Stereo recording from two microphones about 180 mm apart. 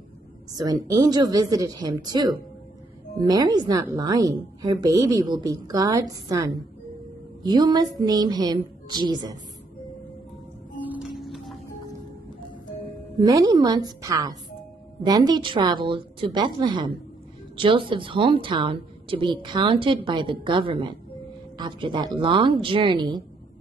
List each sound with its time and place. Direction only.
0.6 s a woman's voice: 20° right (ahead or behind)
10.8 s music: 5° right (ahead or behind)
13.2 s a woman's voice: 20° right (ahead or behind)